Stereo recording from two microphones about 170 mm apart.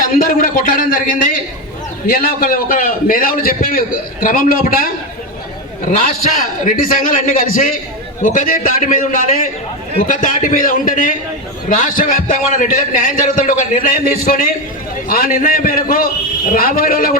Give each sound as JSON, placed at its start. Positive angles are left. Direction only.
{"t": 0.2, "sound": "a man's voice", "side_deg": 55}
{"t": 6.7, "sound": "a man's voice", "side_deg": 55}